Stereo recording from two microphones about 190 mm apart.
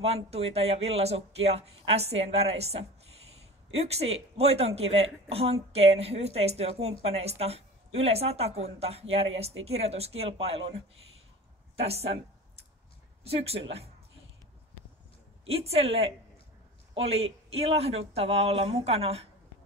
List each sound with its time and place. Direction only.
0.0 s a woman's voice: 30° right (ahead or behind)
11.7 s a sound: 30° right (ahead or behind)
13.2 s a woman's voice: 30° right (ahead or behind)
15.4 s a woman's voice: 30° right (ahead or behind)